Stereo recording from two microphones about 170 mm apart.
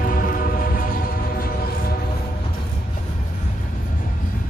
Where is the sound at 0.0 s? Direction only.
55° left (ahead or behind).